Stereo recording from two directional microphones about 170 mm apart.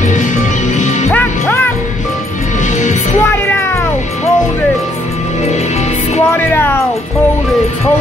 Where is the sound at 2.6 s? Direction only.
45° left (ahead or behind).